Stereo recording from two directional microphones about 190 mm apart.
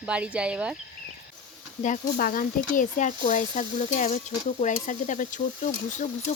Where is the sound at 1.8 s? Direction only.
45° left (ahead or behind).